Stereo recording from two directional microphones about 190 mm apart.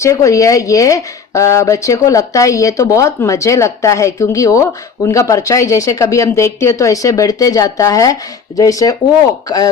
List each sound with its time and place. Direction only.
0.0 s speech: 15° left (ahead or behind)